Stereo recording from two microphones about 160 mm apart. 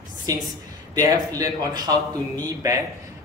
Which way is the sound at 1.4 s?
25° right (ahead or behind).